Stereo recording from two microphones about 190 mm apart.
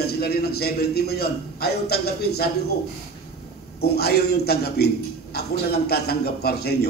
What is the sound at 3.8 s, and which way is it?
A man's voice, 55° left (ahead or behind).